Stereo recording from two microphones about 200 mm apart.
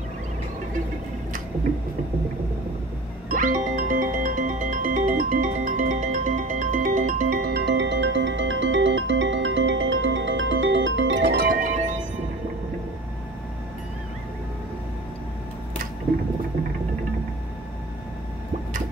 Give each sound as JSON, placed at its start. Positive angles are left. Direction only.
{"t": 3.3, "sound": "music", "side_deg": -45}